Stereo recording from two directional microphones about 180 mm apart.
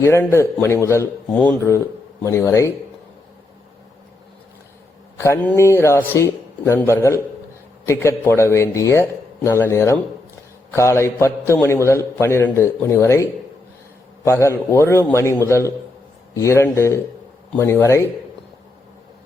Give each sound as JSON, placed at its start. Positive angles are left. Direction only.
{"t": 0.0, "sound": "a man's voice", "side_deg": 15}
{"t": 5.1, "sound": "a man's voice", "side_deg": 15}
{"t": 14.3, "sound": "a man's voice", "side_deg": 15}